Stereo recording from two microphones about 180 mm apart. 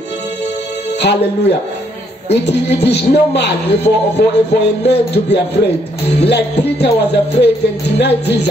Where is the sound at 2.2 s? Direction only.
70° left (ahead or behind).